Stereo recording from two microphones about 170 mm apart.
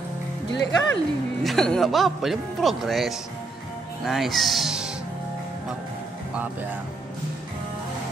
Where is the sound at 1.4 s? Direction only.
5° left (ahead or behind).